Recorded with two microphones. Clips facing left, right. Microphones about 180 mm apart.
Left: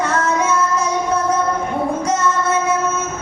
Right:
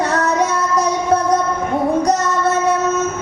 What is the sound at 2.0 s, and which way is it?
Music, 40° right (ahead or behind).